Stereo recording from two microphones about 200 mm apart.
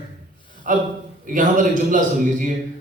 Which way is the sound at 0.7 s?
40° right (ahead or behind).